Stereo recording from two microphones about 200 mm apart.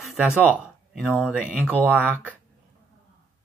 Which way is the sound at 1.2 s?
5° right (ahead or behind).